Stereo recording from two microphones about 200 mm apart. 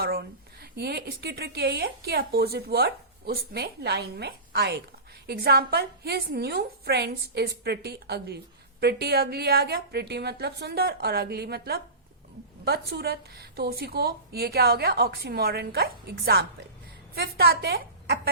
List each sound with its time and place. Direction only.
0.0 s a woman's voice: 50° right (ahead or behind)